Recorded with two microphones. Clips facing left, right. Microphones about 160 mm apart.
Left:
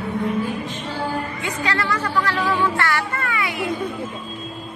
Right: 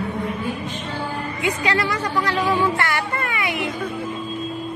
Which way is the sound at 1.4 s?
15° right (ahead or behind).